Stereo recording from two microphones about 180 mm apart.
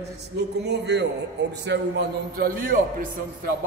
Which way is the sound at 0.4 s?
70° right (ahead or behind).